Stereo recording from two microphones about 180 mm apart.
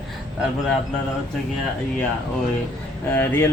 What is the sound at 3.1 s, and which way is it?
Speech, 10° left (ahead or behind).